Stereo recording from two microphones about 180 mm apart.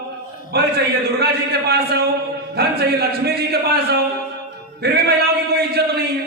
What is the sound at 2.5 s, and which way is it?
A man's voice, 60° right (ahead or behind).